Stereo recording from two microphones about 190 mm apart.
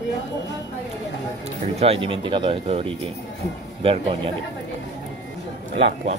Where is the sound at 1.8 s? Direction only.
30° right (ahead or behind).